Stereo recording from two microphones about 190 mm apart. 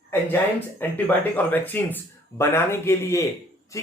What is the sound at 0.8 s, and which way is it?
Speech, 10° left (ahead or behind).